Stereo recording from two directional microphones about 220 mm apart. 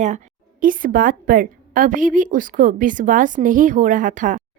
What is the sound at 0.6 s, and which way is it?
A woman's voice, 40° right (ahead or behind).